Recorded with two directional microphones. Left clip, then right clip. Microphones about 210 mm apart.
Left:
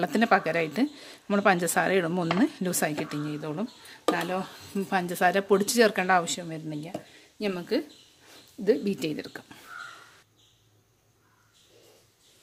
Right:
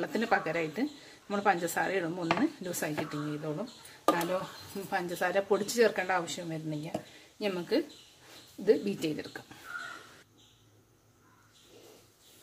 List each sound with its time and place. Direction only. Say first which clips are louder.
0.0 s speech: left 6 dB; 55° left (ahead or behind)
4.8 s speech: left 7 dB; 55° left (ahead or behind)